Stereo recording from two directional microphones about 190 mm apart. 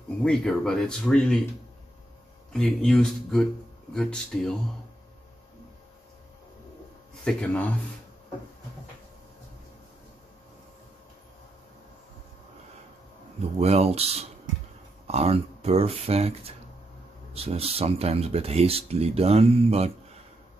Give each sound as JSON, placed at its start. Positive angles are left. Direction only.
{"t": 0.2, "sound": "speech", "side_deg": 5}
{"t": 2.5, "sound": "speech", "side_deg": 0}
{"t": 7.2, "sound": "speech", "side_deg": 10}
{"t": 13.6, "sound": "speech", "side_deg": -35}